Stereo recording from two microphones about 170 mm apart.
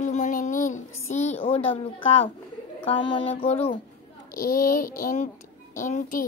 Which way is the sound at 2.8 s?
30° left (ahead or behind).